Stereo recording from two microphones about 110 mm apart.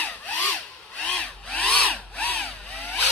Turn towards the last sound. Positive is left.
turn(degrees=15)  # may be behind; listen again after turning